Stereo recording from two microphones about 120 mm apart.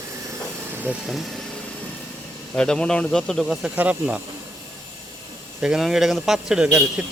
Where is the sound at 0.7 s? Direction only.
15° right (ahead or behind).